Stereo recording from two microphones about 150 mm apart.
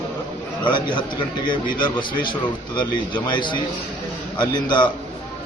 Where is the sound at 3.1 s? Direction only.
30° left (ahead or behind).